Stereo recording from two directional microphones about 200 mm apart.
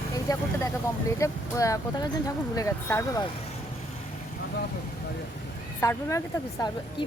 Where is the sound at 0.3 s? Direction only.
20° left (ahead or behind).